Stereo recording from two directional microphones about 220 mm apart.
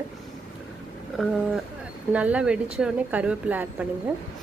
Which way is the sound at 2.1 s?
5° right (ahead or behind).